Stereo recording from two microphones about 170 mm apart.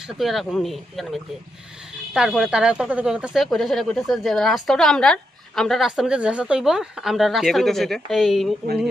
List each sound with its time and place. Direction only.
0.2 s speech: centre (ahead or behind)